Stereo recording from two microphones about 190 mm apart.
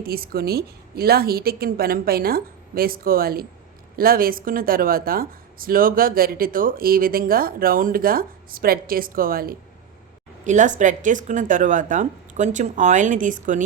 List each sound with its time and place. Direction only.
0.0 s speech: 55° right (ahead or behind)
10.4 s a woman's voice: 40° right (ahead or behind)